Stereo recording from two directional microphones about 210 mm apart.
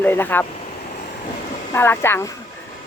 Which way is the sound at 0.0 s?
10° left (ahead or behind).